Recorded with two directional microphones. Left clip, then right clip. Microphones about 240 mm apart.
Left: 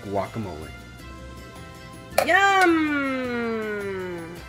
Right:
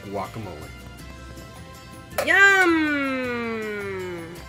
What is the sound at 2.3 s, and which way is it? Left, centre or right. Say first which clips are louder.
Music: right 3 dB; centre.